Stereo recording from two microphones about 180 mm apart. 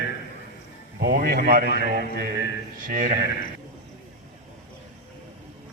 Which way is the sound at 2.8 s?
45° right (ahead or behind).